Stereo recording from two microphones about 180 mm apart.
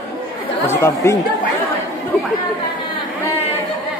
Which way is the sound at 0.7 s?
15° left (ahead or behind).